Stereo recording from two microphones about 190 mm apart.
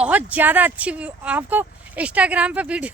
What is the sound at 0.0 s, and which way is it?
Speech, 5° right (ahead or behind).